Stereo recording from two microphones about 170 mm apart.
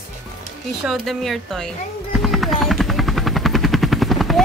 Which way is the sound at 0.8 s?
Centre (ahead or behind).